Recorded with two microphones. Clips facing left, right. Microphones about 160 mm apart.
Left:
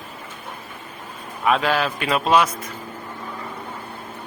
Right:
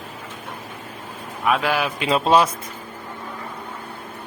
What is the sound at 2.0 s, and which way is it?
Speech, 25° right (ahead or behind).